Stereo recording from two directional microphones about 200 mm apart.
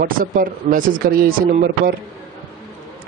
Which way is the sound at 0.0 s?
45° right (ahead or behind).